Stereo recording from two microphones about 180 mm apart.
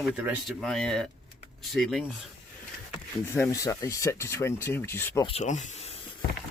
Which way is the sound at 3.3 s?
15° left (ahead or behind).